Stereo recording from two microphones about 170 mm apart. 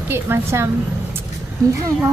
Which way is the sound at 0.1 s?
15° right (ahead or behind).